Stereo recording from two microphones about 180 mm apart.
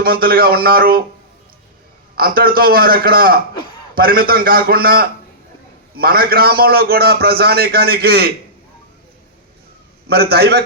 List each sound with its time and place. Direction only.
0.0 s a man's voice: 55° right (ahead or behind)
2.1 s a man's voice: 55° right (ahead or behind)
10.1 s a man's voice: 60° right (ahead or behind)